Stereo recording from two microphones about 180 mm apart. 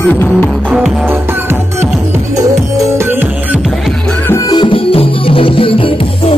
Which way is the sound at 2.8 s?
10° right (ahead or behind).